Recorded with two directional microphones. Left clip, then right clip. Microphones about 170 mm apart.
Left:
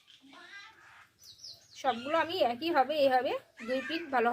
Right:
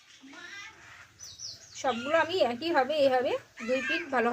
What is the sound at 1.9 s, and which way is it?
Speech, 10° left (ahead or behind).